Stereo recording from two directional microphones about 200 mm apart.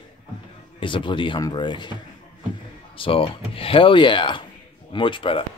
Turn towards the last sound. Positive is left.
turn(degrees=25)  # may be behind; listen again after turning